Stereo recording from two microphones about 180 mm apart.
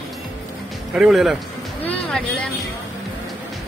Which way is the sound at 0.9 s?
Centre (ahead or behind).